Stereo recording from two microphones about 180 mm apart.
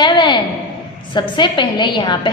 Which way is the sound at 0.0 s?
25° left (ahead or behind).